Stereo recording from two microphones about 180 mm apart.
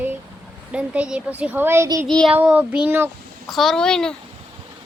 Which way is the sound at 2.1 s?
5° left (ahead or behind).